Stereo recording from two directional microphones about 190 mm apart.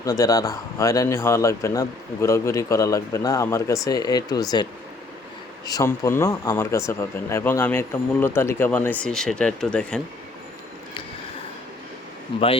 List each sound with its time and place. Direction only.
0.0 s speech: 20° left (ahead or behind)